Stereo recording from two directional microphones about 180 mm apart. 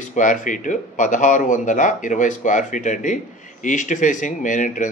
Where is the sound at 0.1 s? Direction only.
45° left (ahead or behind).